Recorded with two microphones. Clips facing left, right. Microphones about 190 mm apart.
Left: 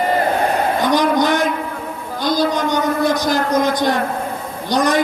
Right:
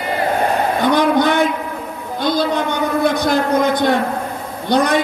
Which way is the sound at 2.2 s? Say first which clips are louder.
Even; 60° right (ahead or behind).